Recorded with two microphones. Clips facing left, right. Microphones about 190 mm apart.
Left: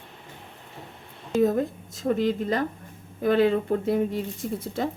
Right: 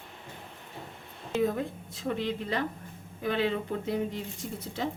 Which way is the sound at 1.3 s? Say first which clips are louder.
Left 6 dB; 40° left (ahead or behind).